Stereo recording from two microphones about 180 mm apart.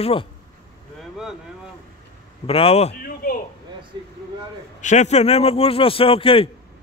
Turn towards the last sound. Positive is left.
turn(degrees=30)  # may be behind; listen again after turning